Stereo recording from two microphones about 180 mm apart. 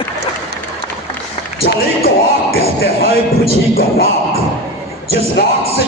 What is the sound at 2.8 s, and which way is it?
Music, 60° left (ahead or behind).